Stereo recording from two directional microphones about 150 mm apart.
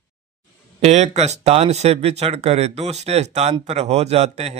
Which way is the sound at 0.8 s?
50° right (ahead or behind).